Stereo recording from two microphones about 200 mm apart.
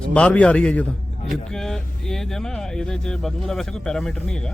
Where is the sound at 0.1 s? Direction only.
5° left (ahead or behind).